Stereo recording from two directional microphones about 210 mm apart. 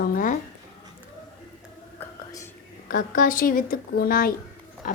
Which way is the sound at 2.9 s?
40° left (ahead or behind).